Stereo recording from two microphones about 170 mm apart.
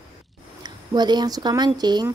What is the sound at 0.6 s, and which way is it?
Speech, 25° right (ahead or behind).